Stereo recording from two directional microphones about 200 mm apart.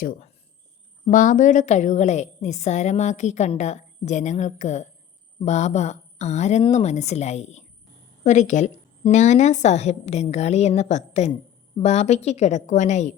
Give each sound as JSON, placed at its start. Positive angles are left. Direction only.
{"t": 0.0, "sound": "a woman's voice", "side_deg": 40}